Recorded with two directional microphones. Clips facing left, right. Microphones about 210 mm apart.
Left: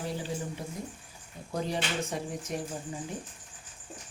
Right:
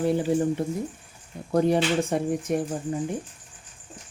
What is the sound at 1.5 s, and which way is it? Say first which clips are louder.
Speech: right 11 dB; 55° right (ahead or behind).